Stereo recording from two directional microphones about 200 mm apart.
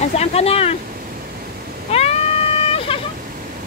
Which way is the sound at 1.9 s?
30° left (ahead or behind).